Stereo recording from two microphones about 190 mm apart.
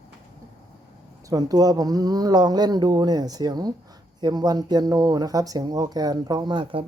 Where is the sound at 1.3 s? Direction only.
20° right (ahead or behind).